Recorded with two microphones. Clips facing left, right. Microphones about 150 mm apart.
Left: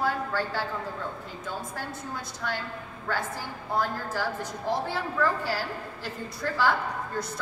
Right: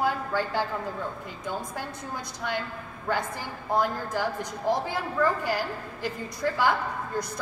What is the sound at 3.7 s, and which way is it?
Speech, 15° right (ahead or behind).